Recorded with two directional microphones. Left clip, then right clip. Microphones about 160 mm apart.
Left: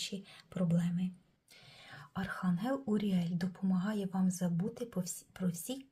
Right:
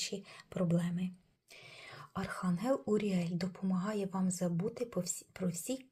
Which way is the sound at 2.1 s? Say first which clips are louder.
Even; 15° right (ahead or behind).